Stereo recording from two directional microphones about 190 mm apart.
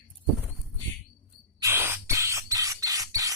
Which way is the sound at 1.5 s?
15° right (ahead or behind).